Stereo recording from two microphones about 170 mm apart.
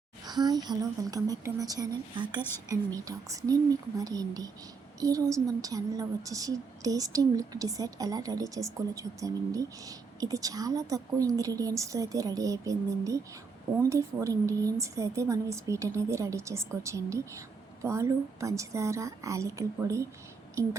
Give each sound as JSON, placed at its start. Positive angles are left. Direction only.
{"t": 0.3, "sound": "a woman's voice", "side_deg": -25}